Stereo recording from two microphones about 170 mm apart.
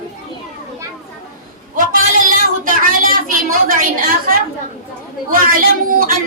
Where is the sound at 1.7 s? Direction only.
55° right (ahead or behind).